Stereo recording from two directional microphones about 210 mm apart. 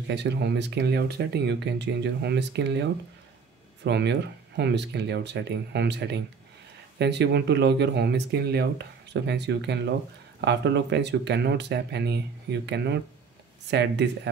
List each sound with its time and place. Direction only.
0.1 s speech: 55° right (ahead or behind)